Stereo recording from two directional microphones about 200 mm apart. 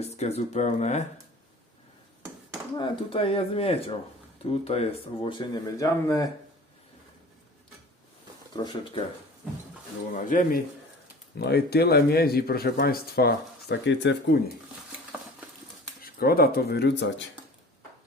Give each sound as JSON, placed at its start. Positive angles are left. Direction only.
{"t": 0.0, "sound": "speech", "side_deg": 35}
{"t": 2.7, "sound": "speech", "side_deg": 25}
{"t": 8.5, "sound": "speech", "side_deg": 20}
{"t": 10.2, "sound": "speech", "side_deg": 40}
{"t": 11.3, "sound": "speech", "side_deg": 55}
{"t": 16.0, "sound": "speech", "side_deg": 50}